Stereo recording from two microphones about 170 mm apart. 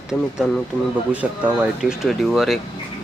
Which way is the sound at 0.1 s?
Centre (ahead or behind).